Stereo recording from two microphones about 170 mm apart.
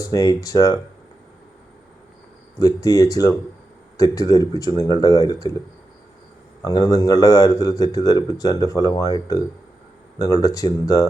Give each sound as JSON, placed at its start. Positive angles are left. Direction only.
{"t": 0.0, "sound": "a man's voice", "side_deg": 20}
{"t": 2.6, "sound": "a man's voice", "side_deg": 20}
{"t": 6.6, "sound": "a man's voice", "side_deg": 20}
{"t": 10.2, "sound": "a man's voice", "side_deg": 20}